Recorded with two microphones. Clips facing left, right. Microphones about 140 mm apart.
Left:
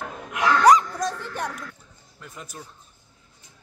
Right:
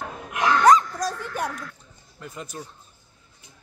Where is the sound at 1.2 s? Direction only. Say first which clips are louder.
Right 2 dB; 10° right (ahead or behind).